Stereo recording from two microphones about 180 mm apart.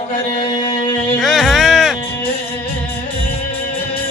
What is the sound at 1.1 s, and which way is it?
Music, centre (ahead or behind).